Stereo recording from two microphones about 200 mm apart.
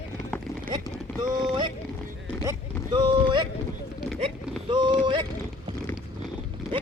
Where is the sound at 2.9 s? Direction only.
25° right (ahead or behind).